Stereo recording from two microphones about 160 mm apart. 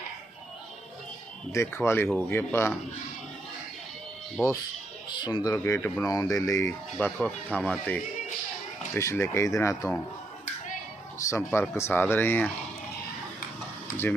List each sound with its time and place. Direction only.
1.5 s speech: 15° left (ahead or behind)
5.0 s speech: 30° left (ahead or behind); by 8.0 s 5° left (ahead or behind)
9.0 s speech: 15° left (ahead or behind)
11.2 s speech: 15° left (ahead or behind)